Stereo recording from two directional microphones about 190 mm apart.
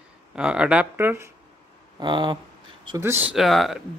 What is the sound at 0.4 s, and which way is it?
Speech, 5° right (ahead or behind).